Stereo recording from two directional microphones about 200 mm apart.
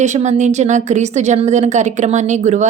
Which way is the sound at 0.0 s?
35° right (ahead or behind).